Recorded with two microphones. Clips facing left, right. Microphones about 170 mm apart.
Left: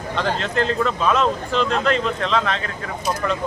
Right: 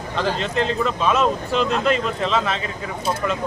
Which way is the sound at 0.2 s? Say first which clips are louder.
Even; centre (ahead or behind).